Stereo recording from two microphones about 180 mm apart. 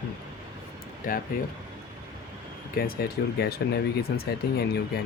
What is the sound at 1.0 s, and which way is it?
Speech, 50° left (ahead or behind).